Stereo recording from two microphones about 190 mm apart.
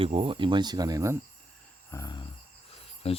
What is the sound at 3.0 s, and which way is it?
Speech, 30° left (ahead or behind).